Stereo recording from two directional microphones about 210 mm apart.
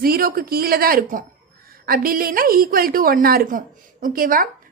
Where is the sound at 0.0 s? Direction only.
45° right (ahead or behind).